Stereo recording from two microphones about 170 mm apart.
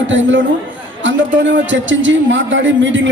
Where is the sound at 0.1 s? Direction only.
90° right.